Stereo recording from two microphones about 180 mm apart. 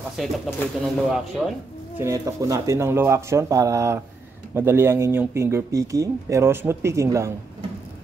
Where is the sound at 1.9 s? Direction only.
15° right (ahead or behind).